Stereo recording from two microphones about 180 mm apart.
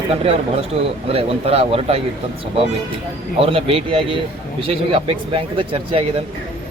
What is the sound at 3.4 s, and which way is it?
Speech, 30° right (ahead or behind).